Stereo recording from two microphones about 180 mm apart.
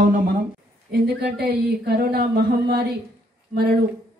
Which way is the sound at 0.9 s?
60° right (ahead or behind).